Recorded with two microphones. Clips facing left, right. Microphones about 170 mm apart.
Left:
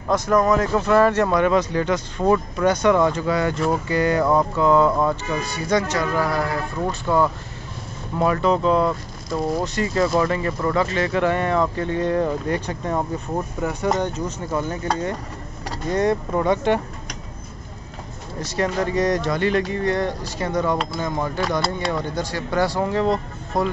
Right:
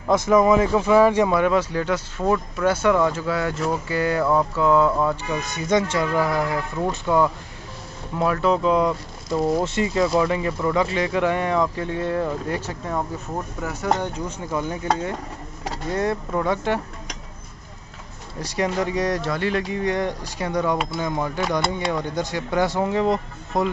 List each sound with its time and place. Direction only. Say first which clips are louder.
0.1 s speech: right 2 dB; 5° right (ahead or behind)
4.8 s speech: left 1 dB; 10° left (ahead or behind)
5.3 s speech: even; 20° right (ahead or behind)
15.9 s speech: left 4 dB; 5° right (ahead or behind)
18.4 s speech: left 1 dB; 15° right (ahead or behind)